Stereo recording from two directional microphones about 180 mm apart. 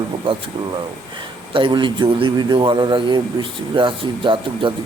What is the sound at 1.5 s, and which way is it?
Speech, 25° right (ahead or behind).